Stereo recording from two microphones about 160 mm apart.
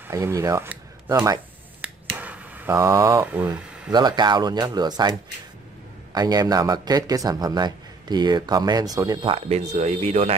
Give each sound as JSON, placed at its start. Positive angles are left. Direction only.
{"t": 0.1, "sound": "speech", "side_deg": -20}
{"t": 1.8, "sound": "finger snapping", "side_deg": -10}
{"t": 2.7, "sound": "speech", "side_deg": -20}
{"t": 3.3, "sound": "speech", "side_deg": -10}
{"t": 3.9, "sound": "speech", "side_deg": -25}
{"t": 6.1, "sound": "speech", "side_deg": -25}